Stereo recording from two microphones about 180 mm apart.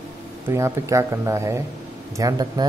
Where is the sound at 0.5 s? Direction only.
15° right (ahead or behind).